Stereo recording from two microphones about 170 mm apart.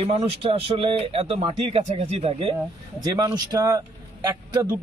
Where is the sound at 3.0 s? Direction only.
20° right (ahead or behind).